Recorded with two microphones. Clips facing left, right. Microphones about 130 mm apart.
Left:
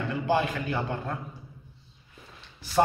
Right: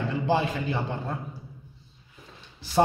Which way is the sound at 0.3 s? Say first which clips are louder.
Even; 25° right (ahead or behind).